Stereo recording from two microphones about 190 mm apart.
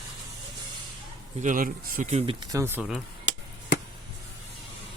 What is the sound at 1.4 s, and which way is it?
Speech, 45° right (ahead or behind).